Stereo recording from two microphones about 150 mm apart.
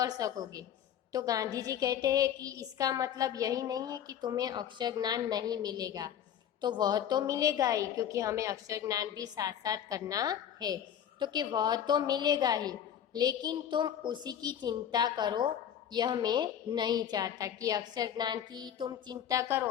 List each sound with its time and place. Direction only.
0.0 s a woman's voice: 25° right (ahead or behind)